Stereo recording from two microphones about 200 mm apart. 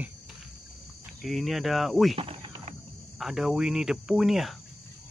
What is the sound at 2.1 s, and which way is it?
Cricket, 30° right (ahead or behind).